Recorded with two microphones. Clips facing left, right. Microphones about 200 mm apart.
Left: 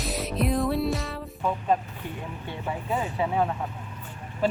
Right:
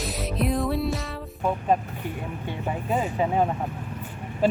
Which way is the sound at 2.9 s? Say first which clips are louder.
Right 3 dB; 20° right (ahead or behind).